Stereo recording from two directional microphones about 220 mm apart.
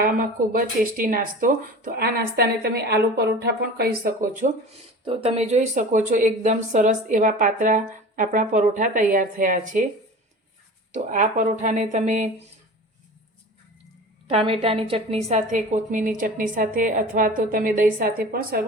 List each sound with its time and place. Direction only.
0.0 s speech: 40° right (ahead or behind)
5.0 s speech: 25° right (ahead or behind)
10.9 s speech: 35° right (ahead or behind)
14.3 s speech: 25° right (ahead or behind); by 18.6 s 40° right (ahead or behind)